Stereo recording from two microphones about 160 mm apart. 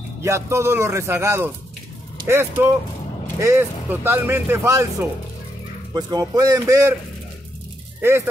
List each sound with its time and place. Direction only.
0.2 s speech: 15° right (ahead or behind)
5.9 s a man's voice: 25° right (ahead or behind)